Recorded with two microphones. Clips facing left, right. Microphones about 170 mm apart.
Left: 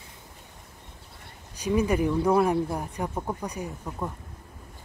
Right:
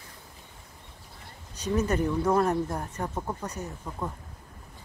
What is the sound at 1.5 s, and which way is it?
Speech, 10° left (ahead or behind).